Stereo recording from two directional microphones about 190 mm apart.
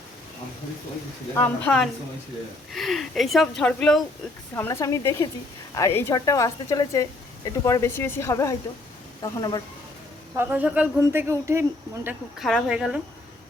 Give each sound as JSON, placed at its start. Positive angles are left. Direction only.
{"t": 1.4, "sound": "speech", "side_deg": 5}
{"t": 10.3, "sound": "speech", "side_deg": -10}
{"t": 12.0, "sound": "speech", "side_deg": 0}